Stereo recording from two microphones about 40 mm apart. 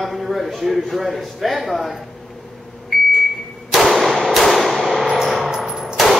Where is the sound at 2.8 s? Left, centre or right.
Centre.